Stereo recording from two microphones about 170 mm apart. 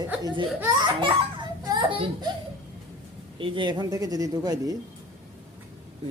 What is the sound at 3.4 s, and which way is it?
Speech, 25° right (ahead or behind).